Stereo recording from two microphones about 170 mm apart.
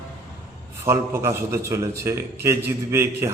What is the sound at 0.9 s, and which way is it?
A man's voice, 15° right (ahead or behind).